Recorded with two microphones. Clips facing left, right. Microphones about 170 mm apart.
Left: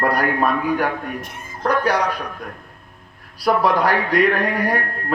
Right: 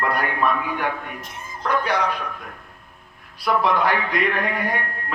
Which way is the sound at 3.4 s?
40° left (ahead or behind).